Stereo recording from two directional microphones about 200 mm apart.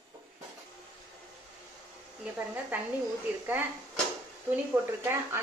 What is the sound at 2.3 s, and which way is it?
Speech, 10° right (ahead or behind).